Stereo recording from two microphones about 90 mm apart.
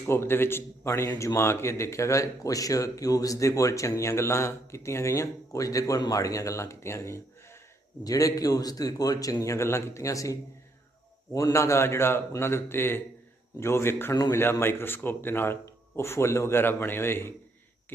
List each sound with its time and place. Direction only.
0.1 s a man's voice: 25° left (ahead or behind)
11.3 s a man's voice: 35° left (ahead or behind)